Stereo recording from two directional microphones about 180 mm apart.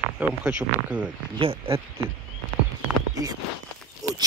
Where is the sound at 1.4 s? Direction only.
30° right (ahead or behind).